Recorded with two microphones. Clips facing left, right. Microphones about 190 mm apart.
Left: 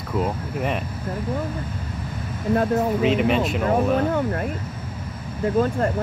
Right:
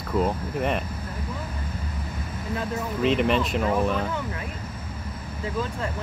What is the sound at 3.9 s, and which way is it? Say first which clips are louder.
Speech: left 7 dB; 50° left (ahead or behind).